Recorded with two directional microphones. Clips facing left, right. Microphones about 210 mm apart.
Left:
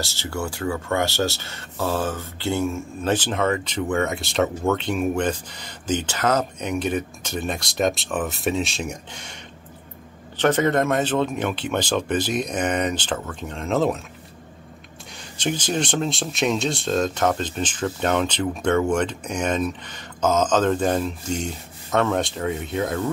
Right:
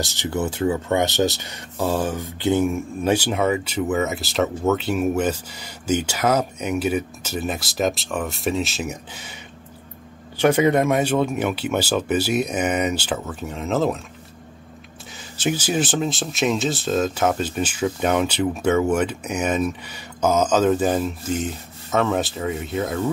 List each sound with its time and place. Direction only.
0.0 s speech: 15° right (ahead or behind); by 13.9 s centre (ahead or behind)
15.3 s speech: 5° right (ahead or behind)